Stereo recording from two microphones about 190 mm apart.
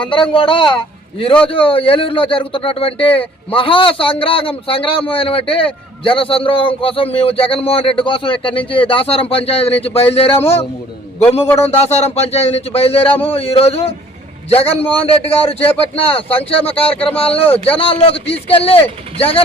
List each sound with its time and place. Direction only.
0.0 s speech: 25° left (ahead or behind)
11.6 s a man's voice: 35° left (ahead or behind)